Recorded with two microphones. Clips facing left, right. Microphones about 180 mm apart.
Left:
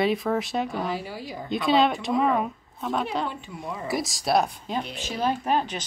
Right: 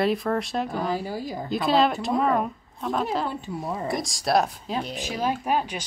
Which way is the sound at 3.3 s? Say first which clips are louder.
Right 4 dB; 40° right (ahead or behind).